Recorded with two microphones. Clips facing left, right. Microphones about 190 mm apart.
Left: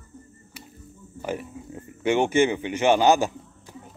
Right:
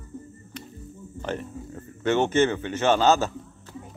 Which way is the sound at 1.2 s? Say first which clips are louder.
Left 1 dB; 10° left (ahead or behind).